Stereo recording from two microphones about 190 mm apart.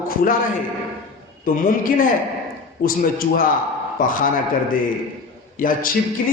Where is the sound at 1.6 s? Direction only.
45° left (ahead or behind).